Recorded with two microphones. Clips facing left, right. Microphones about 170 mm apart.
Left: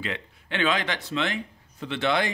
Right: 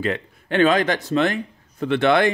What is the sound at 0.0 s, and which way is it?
Speech, 45° right (ahead or behind).